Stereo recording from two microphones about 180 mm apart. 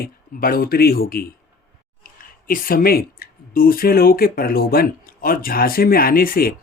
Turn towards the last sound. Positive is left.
turn(degrees=55)  # may be behind; listen again after turning